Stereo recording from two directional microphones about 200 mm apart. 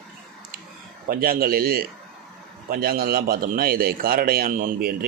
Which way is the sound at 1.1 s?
45° right (ahead or behind).